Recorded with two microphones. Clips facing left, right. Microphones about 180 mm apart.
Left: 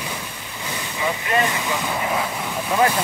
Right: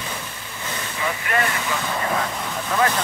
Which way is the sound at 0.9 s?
20° left (ahead or behind).